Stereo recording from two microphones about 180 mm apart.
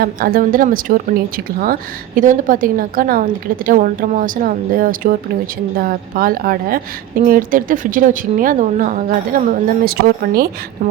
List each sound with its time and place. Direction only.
0.0 s speech: 55° right (ahead or behind)